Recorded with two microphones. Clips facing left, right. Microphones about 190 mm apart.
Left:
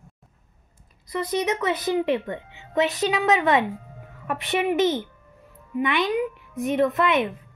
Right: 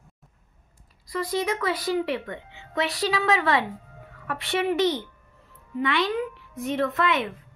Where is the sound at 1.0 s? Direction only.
20° left (ahead or behind).